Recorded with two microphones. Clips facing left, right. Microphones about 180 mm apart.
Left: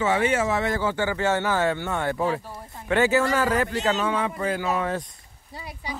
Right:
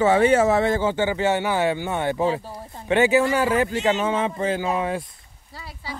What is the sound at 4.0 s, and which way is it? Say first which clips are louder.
Speech: right 2 dB; 25° right (ahead or behind).